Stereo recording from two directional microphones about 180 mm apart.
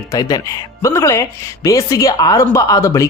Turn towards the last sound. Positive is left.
turn(degrees=15)  # may be behind; listen again after turning